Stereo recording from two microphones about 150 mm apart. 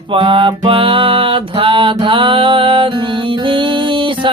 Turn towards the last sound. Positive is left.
turn(degrees=-35)  # may be behind; listen again after turning